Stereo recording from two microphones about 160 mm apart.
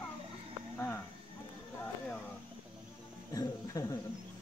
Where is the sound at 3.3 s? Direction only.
20° left (ahead or behind).